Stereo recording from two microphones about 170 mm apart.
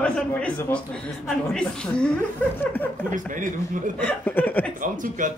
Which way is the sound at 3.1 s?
50° right (ahead or behind).